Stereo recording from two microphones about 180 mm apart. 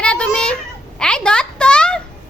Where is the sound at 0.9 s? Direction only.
5° left (ahead or behind).